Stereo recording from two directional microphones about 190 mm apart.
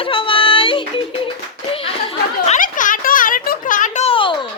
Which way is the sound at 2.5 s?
45° left (ahead or behind).